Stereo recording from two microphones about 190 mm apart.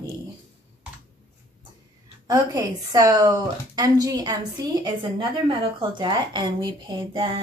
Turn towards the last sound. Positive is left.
turn(degrees=-25)  # may be behind; listen again after turning